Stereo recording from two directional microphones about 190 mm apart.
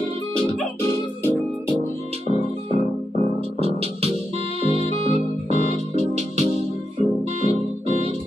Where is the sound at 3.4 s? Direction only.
30° right (ahead or behind).